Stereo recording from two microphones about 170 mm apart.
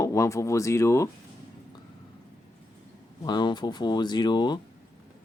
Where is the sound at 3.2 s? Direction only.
25° left (ahead or behind).